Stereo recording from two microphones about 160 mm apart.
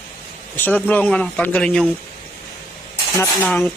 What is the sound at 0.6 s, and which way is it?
Speech, 10° left (ahead or behind).